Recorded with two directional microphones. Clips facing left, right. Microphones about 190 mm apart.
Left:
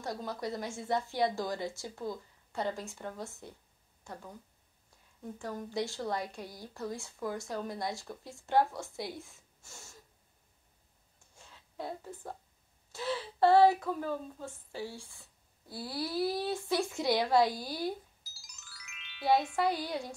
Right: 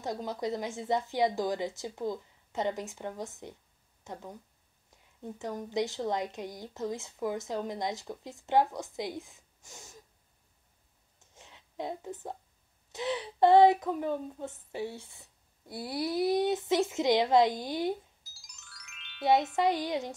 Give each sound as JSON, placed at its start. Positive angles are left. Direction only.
{"t": 0.0, "sound": "speech", "side_deg": -20}
{"t": 11.1, "sound": "a sound", "side_deg": -20}
{"t": 12.9, "sound": "speech", "side_deg": -20}
{"t": 18.3, "sound": "music", "side_deg": 0}
{"t": 19.5, "sound": "speech", "side_deg": -20}